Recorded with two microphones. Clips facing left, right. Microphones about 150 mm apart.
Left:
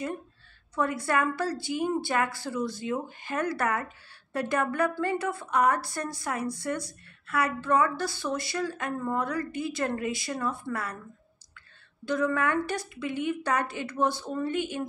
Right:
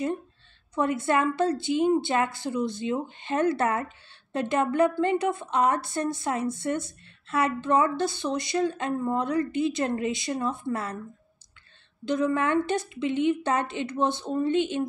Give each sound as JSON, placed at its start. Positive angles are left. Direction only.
{"t": 0.7, "sound": "a woman's voice", "side_deg": -25}
{"t": 12.0, "sound": "a woman's voice", "side_deg": -20}